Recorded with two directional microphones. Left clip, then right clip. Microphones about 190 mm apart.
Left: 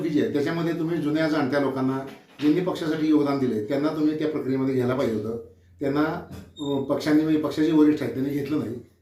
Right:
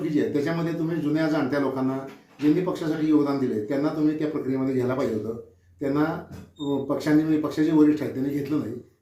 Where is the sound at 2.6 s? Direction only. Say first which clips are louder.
Left 1 dB; 5° right (ahead or behind).